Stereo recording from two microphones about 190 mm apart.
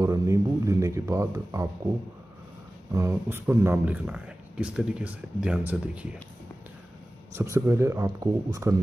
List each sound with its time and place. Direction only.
0.0 s speech: 15° right (ahead or behind)
2.9 s speech: 15° right (ahead or behind)
7.3 s speech: 15° right (ahead or behind)